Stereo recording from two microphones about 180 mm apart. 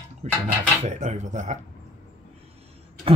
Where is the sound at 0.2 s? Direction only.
40° right (ahead or behind).